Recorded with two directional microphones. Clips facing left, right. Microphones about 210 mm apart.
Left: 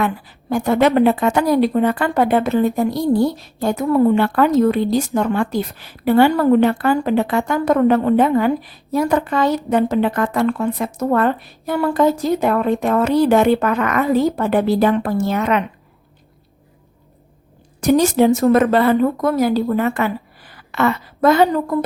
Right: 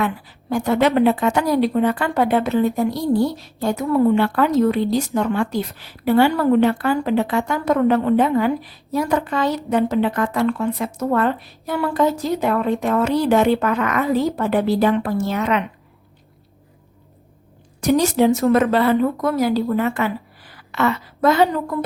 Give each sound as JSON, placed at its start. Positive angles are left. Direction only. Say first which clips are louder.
{"t": 0.5, "sound": "speech", "louder": "left 2 dB", "side_deg": 50}
{"t": 17.7, "sound": "speech", "louder": "left 3 dB", "side_deg": 50}